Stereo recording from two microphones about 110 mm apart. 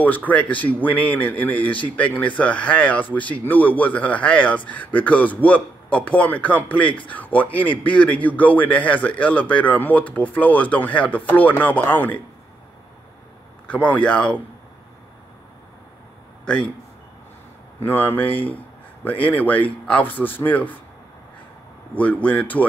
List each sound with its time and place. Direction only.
0.0 s speech: 15° left (ahead or behind)
13.7 s speech: 15° left (ahead or behind)
17.8 s speech: 15° left (ahead or behind)
21.9 s speech: 10° left (ahead or behind)